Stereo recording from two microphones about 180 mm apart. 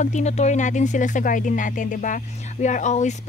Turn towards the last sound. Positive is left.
turn(degrees=40)  # may be behind; listen again after turning